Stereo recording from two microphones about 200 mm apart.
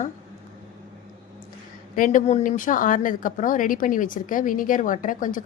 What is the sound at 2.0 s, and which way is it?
A woman's voice, 40° left (ahead or behind).